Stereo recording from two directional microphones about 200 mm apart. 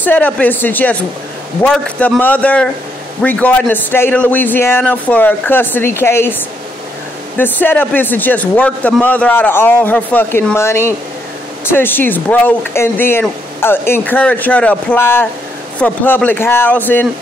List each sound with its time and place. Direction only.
0.0 s a man's voice: 10° left (ahead or behind)
7.3 s a man's voice: 10° left (ahead or behind)